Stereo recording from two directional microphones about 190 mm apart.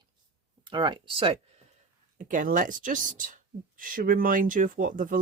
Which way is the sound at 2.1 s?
45° right (ahead or behind).